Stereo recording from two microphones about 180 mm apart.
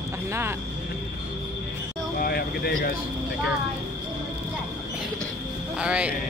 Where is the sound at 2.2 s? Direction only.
60° left (ahead or behind).